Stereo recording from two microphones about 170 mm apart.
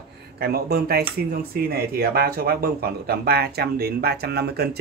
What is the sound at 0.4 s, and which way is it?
Speech, 65° right (ahead or behind).